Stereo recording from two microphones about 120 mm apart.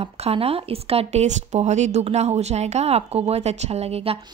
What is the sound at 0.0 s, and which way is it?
Speech, 55° right (ahead or behind).